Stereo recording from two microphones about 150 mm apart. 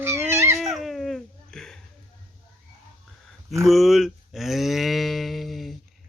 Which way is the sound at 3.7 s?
Centre (ahead or behind).